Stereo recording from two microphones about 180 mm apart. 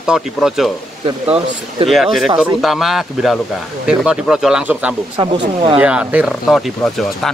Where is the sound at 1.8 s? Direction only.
Centre (ahead or behind).